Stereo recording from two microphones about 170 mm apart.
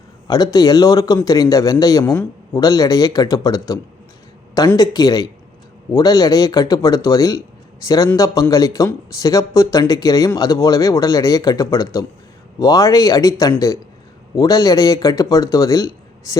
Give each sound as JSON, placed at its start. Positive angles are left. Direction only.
{"t": 0.3, "sound": "speech", "side_deg": 25}